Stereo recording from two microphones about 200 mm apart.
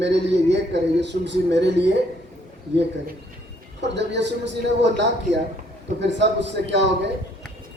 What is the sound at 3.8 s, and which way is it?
A man's voice, 60° right (ahead or behind).